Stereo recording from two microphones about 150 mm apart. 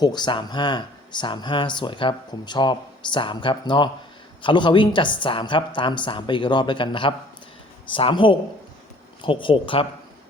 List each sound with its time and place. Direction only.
0.0 s speech: 30° left (ahead or behind)